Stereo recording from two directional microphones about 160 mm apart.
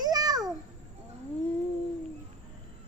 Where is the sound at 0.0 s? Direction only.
25° right (ahead or behind).